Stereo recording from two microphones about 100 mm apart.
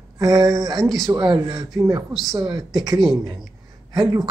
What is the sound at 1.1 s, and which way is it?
A man's voice, 40° right (ahead or behind).